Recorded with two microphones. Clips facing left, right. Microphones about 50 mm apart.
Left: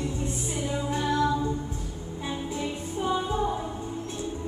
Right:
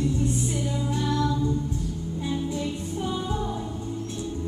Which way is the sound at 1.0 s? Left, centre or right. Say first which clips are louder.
Left 1 dB; left.